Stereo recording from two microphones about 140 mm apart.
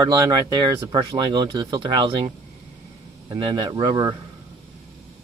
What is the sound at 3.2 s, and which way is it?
Speech, 30° right (ahead or behind).